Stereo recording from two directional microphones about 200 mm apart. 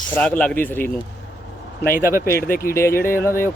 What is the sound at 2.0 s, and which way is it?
Speech, 15° right (ahead or behind).